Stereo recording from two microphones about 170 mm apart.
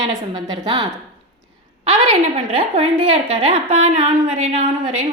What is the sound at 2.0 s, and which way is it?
A woman's voice, 35° right (ahead or behind).